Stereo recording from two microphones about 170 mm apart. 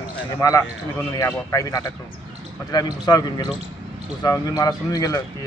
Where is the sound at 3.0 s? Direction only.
25° left (ahead or behind).